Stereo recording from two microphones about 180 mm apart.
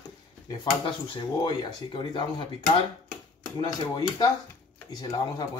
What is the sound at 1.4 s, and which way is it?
Speech, 30° left (ahead or behind).